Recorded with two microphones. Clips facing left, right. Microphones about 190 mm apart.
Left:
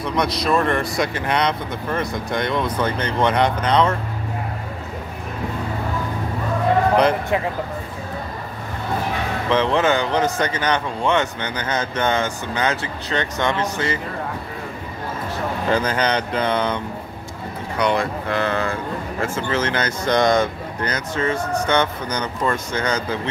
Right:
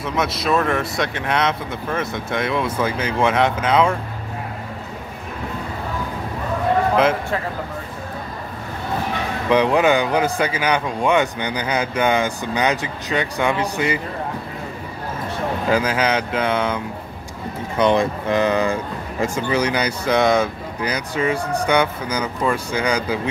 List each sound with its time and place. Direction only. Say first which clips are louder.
0.0 s speech: left 1 dB; 5° right (ahead or behind)
9.5 s speech: right 3 dB; 15° right (ahead or behind)
15.7 s speech: right 1 dB; 5° right (ahead or behind)
17.7 s speech: right 3 dB; 20° right (ahead or behind)